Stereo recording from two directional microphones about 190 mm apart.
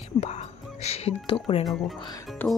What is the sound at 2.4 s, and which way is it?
Speech, 10° left (ahead or behind).